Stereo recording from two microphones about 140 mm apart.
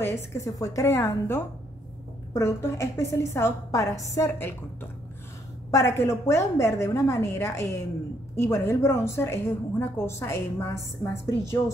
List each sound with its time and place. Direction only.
0.0 s a woman's voice: 20° left (ahead or behind)
5.7 s a woman's voice: 20° left (ahead or behind)